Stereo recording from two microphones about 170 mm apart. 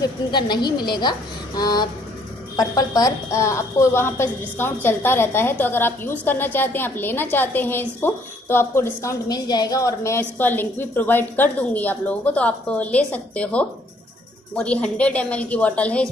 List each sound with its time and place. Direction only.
0.0 s a woman's voice: 25° left (ahead or behind); by 16.1 s 5° left (ahead or behind)